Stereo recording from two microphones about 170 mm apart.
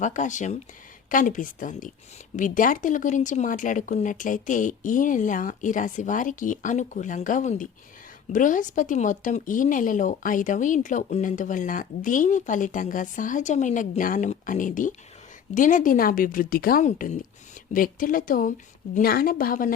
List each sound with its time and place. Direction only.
0.0 s a woman's voice: 45° left (ahead or behind)
16.8 s a woman's voice: 45° left (ahead or behind)
17.7 s a woman's voice: 55° left (ahead or behind)